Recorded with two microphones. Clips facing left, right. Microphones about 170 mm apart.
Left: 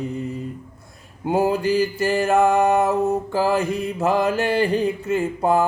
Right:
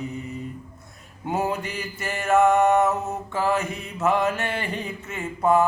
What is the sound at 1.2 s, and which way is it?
Mantra, 30° left (ahead or behind).